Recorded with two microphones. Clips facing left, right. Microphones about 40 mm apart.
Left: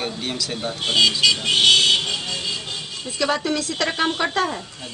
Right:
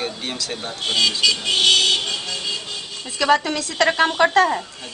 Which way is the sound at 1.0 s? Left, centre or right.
Centre.